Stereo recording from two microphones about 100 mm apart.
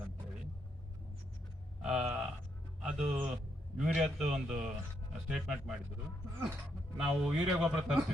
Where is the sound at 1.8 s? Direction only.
5° right (ahead or behind).